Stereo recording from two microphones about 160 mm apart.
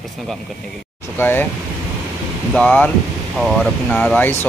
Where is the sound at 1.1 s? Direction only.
15° left (ahead or behind).